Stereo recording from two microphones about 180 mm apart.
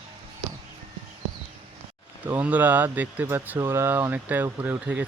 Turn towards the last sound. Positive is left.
turn(degrees=-10)  # may be behind; listen again after turning